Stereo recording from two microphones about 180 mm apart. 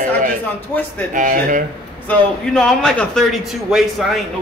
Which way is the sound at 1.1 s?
45° right (ahead or behind).